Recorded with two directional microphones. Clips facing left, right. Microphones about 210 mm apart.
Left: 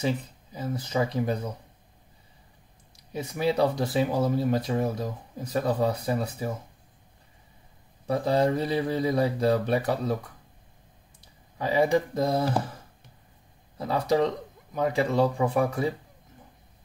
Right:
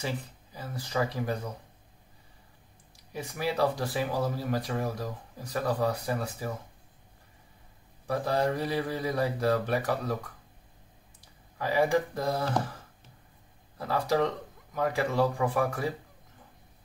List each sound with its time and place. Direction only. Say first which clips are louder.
0.0 s speech: left 6 dB; 20° left (ahead or behind)
3.1 s speech: left 5 dB; 20° left (ahead or behind)
8.1 s speech: left 4 dB; 20° left (ahead or behind)
11.5 s speech: left 3 dB; 20° left (ahead or behind)
13.7 s speech: left 3 dB; 20° left (ahead or behind)